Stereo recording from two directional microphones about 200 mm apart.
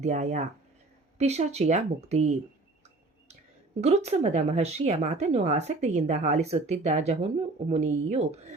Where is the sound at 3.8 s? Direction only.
35° right (ahead or behind).